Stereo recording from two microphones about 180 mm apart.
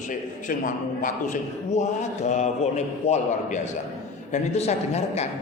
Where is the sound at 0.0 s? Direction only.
45° left (ahead or behind).